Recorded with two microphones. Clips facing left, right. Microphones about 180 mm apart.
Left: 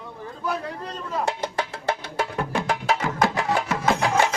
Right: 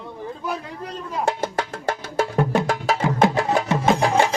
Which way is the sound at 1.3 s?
50° right (ahead or behind).